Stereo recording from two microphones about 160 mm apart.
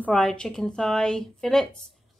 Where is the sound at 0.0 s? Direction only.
5° left (ahead or behind).